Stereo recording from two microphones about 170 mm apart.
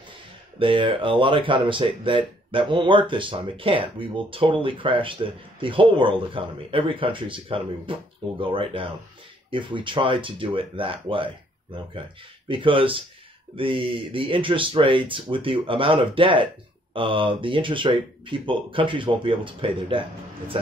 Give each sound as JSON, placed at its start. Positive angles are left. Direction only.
{"t": 0.6, "sound": "speech", "side_deg": -30}